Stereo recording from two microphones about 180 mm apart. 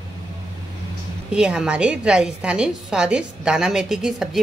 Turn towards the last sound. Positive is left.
turn(degrees=0)  # may be behind; listen again after turning